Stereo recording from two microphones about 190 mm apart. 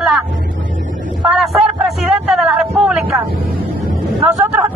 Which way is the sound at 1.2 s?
Centre (ahead or behind).